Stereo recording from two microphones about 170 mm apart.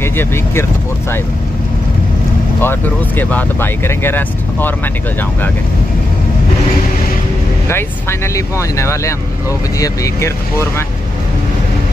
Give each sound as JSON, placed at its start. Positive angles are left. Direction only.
{"t": 0.0, "sound": "speech", "side_deg": 15}
{"t": 2.6, "sound": "speech", "side_deg": 10}
{"t": 7.6, "sound": "speech", "side_deg": 15}